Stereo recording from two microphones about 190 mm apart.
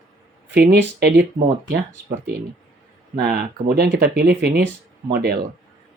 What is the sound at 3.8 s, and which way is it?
Speech, 55° right (ahead or behind).